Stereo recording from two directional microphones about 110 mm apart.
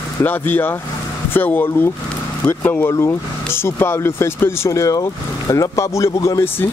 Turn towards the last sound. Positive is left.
turn(degrees=25)  # may be behind; listen again after turning